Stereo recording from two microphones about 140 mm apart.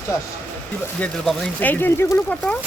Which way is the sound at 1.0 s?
10° left (ahead or behind).